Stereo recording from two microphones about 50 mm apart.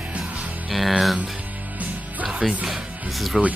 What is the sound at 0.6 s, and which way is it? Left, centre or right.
Speech, centre.